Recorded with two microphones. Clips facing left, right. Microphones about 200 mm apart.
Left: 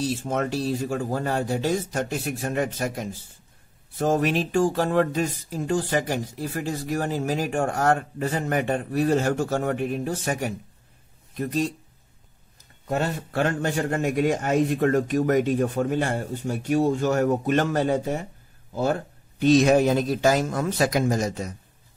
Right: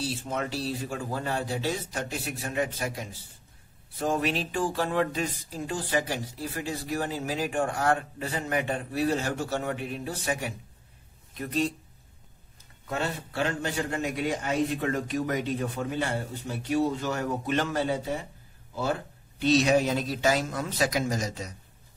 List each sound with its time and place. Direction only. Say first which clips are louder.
0.0 s speech: left 6 dB; 50° left (ahead or behind)
12.8 s speech: left 5 dB; 45° left (ahead or behind)